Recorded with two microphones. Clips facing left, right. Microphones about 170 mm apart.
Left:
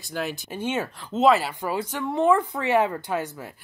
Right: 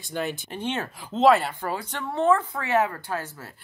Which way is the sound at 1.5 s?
15° left (ahead or behind).